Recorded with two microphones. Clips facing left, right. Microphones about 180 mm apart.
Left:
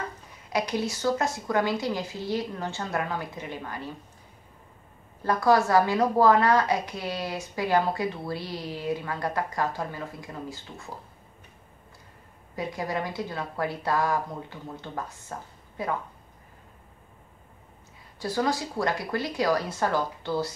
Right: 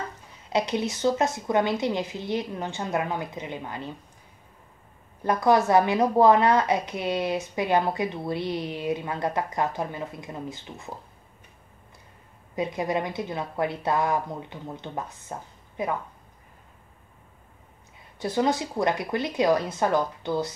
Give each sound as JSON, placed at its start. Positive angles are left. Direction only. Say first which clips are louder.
{"t": 0.5, "sound": "a woman's voice", "louder": "right 2 dB", "side_deg": -25}
{"t": 5.2, "sound": "a woman's voice", "louder": "right 1 dB", "side_deg": -20}
{"t": 12.5, "sound": "a woman's voice", "louder": "right 4 dB", "side_deg": -20}
{"t": 18.2, "sound": "a woman's voice", "louder": "right 3 dB", "side_deg": -20}